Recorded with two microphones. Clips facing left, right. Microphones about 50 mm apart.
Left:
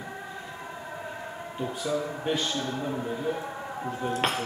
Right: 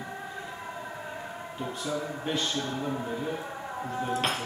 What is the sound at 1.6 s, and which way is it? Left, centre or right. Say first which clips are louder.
A man's voice: left 3 dB; centre.